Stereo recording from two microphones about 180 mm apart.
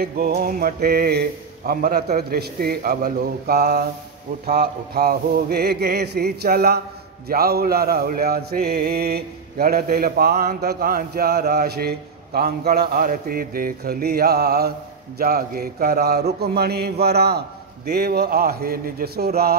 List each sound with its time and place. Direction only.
0.0 s mantra: 50° right (ahead or behind)